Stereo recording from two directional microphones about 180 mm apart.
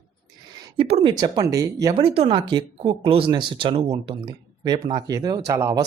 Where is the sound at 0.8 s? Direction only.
30° right (ahead or behind).